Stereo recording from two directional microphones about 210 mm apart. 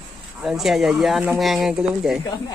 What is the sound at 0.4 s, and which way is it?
Speech, centre (ahead or behind).